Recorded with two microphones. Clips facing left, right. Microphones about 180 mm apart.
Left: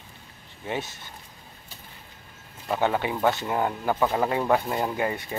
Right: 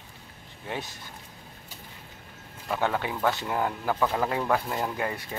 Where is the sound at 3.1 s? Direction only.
20° left (ahead or behind).